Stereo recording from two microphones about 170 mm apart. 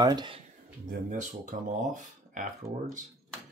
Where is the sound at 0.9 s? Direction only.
50° right (ahead or behind).